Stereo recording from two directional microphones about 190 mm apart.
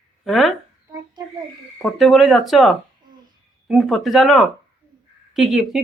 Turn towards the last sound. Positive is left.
turn(degrees=0)  # may be behind; listen again after turning